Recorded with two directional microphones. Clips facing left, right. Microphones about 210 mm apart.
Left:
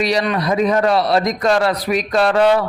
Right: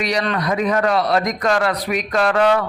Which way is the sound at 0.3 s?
30° left (ahead or behind).